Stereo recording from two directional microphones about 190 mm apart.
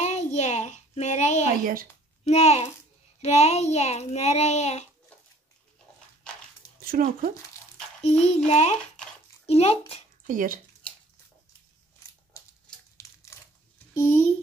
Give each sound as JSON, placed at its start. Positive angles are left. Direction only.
{"t": 0.0, "sound": "child singing", "side_deg": 35}
{"t": 1.5, "sound": "speech", "side_deg": -50}
{"t": 2.2, "sound": "a child's voice", "side_deg": 35}
{"t": 6.8, "sound": "a sound", "side_deg": -50}
{"t": 8.0, "sound": "a child's voice", "side_deg": 35}
{"t": 10.2, "sound": "speech", "side_deg": -45}
{"t": 12.4, "sound": "typewriter", "side_deg": 15}
{"t": 12.9, "sound": "crumpling", "side_deg": 15}
{"t": 13.9, "sound": "speech", "side_deg": 15}